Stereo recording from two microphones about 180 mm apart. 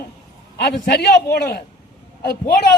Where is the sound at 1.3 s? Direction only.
60° left (ahead or behind).